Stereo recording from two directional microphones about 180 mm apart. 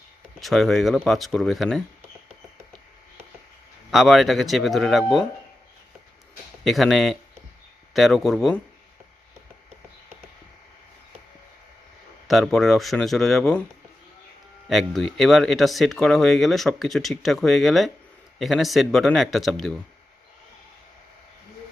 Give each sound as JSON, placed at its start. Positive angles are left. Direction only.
{"t": 0.4, "sound": "speech", "side_deg": 0}
{"t": 3.9, "sound": "speech", "side_deg": 0}
{"t": 6.7, "sound": "speech", "side_deg": 0}
{"t": 12.3, "sound": "speech", "side_deg": 0}
{"t": 14.7, "sound": "speech", "side_deg": 0}